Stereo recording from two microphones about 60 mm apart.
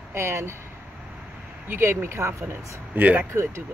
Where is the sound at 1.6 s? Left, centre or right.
Right.